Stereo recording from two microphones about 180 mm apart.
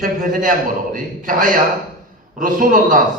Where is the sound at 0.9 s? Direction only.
50° right (ahead or behind).